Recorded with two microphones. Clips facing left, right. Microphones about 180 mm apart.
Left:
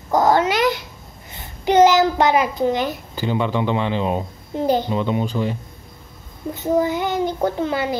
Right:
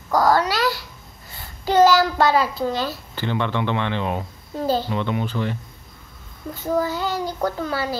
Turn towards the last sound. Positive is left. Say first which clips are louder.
# left 4 dB
turn(degrees=20)  # may be behind; listen again after turning